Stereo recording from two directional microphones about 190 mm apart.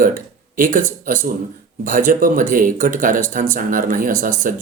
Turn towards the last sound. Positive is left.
turn(degrees=-45)  # may be behind; listen again after turning